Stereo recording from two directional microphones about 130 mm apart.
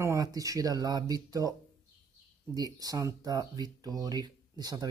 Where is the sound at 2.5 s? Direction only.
30° right (ahead or behind).